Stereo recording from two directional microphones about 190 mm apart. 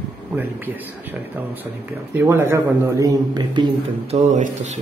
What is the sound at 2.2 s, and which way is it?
A man's voice, 10° right (ahead or behind).